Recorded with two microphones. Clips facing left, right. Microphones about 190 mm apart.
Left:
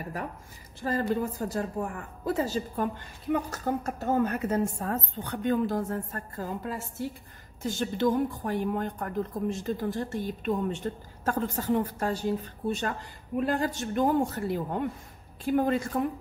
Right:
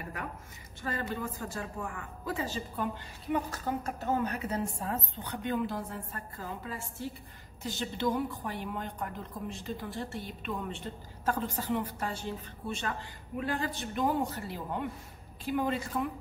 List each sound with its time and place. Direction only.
0.8 s a woman's voice: 35° left (ahead or behind)